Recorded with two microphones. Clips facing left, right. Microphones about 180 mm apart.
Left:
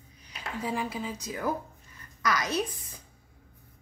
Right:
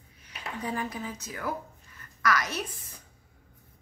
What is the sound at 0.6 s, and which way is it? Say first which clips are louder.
A woman's voice: left 1 dB; 10° left (ahead or behind).